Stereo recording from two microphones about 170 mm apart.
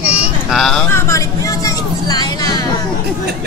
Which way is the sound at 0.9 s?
20° left (ahead or behind).